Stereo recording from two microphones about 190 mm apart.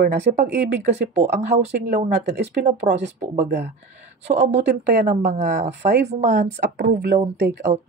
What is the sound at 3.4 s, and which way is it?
Speech, 60° right (ahead or behind).